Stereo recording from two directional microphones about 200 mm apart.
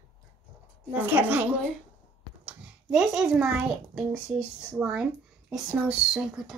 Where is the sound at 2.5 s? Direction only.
5° right (ahead or behind).